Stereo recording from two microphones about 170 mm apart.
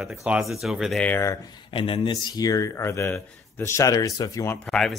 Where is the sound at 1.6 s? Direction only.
30° left (ahead or behind).